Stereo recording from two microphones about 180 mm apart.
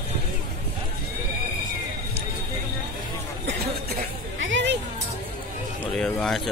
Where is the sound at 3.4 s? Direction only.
70° right (ahead or behind); by 4.8 s 85° right.